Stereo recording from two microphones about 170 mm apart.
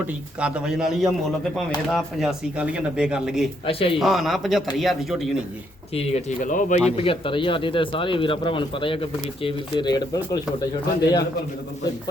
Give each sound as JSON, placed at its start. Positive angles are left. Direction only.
{"t": 0.3, "sound": "speech", "side_deg": -5}
{"t": 3.7, "sound": "speech", "side_deg": 35}
{"t": 3.9, "sound": "speech", "side_deg": 0}
{"t": 5.9, "sound": "speech", "side_deg": 35}